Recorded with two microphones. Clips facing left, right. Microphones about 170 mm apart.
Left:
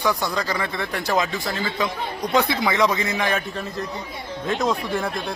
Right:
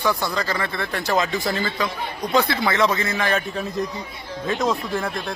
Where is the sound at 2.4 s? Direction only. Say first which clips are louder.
Even; 15° left (ahead or behind).